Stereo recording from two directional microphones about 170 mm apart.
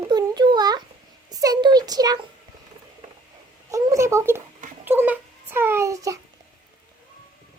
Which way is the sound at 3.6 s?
20° right (ahead or behind).